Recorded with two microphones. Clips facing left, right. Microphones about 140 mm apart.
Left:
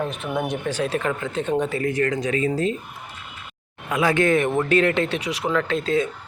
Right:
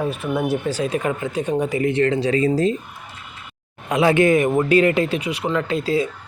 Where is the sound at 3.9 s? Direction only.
25° right (ahead or behind).